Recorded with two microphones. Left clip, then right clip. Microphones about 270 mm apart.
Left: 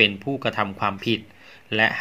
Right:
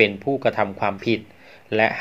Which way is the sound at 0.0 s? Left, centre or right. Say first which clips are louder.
Right 2 dB; left.